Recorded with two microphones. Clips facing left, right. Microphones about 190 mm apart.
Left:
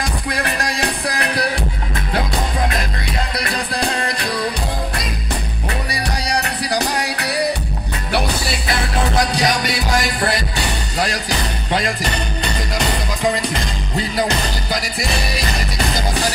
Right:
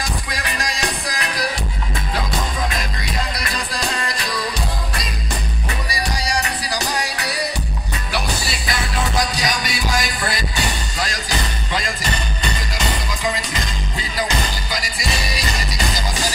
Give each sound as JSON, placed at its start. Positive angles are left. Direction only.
{"t": 0.3, "sound": "music", "side_deg": 60}
{"t": 3.3, "sound": "music", "side_deg": 60}
{"t": 5.9, "sound": "music", "side_deg": 60}
{"t": 11.7, "sound": "music", "side_deg": 60}
{"t": 13.3, "sound": "music", "side_deg": 60}